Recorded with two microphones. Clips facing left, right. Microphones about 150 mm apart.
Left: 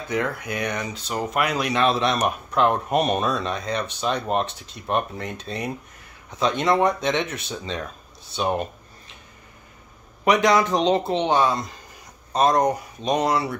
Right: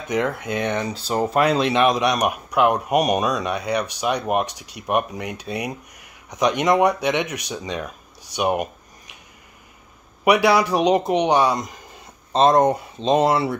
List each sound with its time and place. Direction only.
0.1 s speech: 20° right (ahead or behind)
10.2 s speech: 10° right (ahead or behind); by 13.6 s 25° right (ahead or behind)